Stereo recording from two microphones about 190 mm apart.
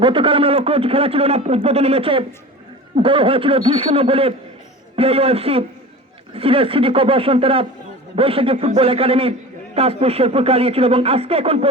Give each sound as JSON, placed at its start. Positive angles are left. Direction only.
{"t": 0.0, "sound": "a man's voice", "side_deg": -25}